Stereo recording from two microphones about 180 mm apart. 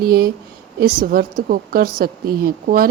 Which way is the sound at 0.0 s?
55° right (ahead or behind).